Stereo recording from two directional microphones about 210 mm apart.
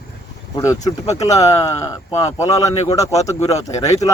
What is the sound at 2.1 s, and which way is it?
Speech, 30° left (ahead or behind).